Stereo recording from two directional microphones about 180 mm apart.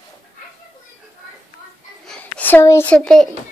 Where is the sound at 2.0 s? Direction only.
10° left (ahead or behind).